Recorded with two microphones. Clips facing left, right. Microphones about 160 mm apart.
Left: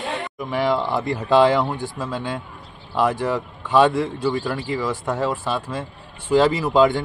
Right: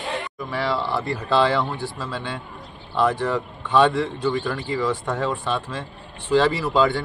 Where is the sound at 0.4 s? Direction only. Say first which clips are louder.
Left 5 dB; 15° left (ahead or behind).